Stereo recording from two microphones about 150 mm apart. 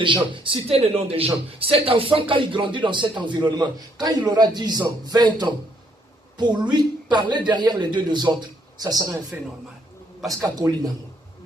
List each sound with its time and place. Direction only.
0.0 s speech: 35° right (ahead or behind)
10.2 s speech: centre (ahead or behind)
10.4 s speech: 25° right (ahead or behind)